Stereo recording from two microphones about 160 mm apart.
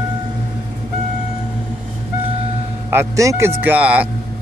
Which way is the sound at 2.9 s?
15° right (ahead or behind).